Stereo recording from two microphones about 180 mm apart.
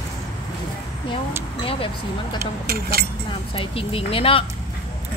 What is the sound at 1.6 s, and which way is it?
Speech, 30° left (ahead or behind).